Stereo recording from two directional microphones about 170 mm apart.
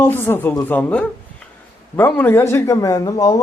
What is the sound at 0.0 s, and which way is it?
Speech, 15° left (ahead or behind).